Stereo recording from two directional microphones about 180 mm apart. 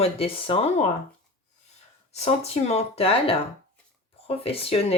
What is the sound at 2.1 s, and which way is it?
Speech, 35° left (ahead or behind).